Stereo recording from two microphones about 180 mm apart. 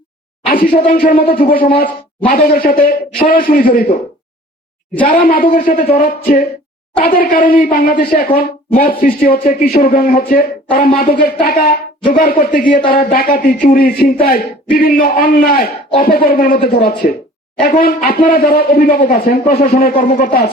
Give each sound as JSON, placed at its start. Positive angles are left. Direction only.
{"t": 1.0, "sound": "speech", "side_deg": 50}
{"t": 5.0, "sound": "speech", "side_deg": 55}